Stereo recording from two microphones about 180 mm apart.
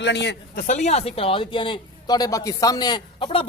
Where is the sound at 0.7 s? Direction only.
40° left (ahead or behind).